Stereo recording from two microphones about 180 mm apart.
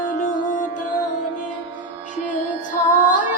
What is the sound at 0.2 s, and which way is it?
Music, 45° left (ahead or behind).